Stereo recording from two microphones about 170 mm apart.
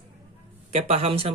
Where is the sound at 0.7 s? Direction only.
40° right (ahead or behind).